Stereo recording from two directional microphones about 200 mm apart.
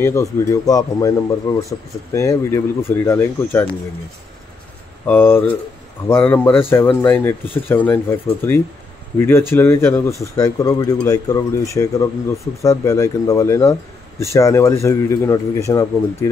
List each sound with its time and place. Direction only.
0.0 s speech: 15° left (ahead or behind)
5.0 s speech: 10° left (ahead or behind)